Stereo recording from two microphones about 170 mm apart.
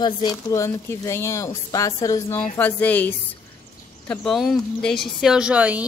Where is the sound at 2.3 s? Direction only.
10° left (ahead or behind).